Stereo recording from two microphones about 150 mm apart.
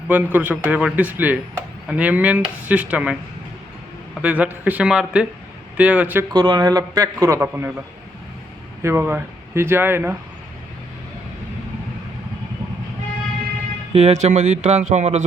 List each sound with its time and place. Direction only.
0.1 s speech: 10° right (ahead or behind)
4.2 s speech: 10° right (ahead or behind)
6.3 s a man's voice: 30° right (ahead or behind)
8.8 s speech: 15° right (ahead or behind)
13.9 s speech: 50° right (ahead or behind)